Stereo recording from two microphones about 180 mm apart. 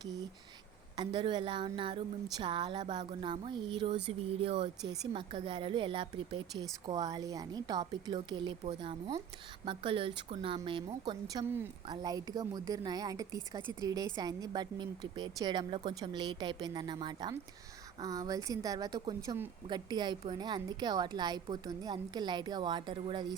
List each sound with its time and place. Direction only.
0.9 s a woman's voice: 25° right (ahead or behind)